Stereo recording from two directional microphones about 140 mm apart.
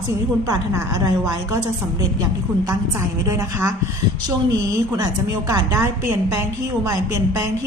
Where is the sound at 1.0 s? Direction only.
30° right (ahead or behind).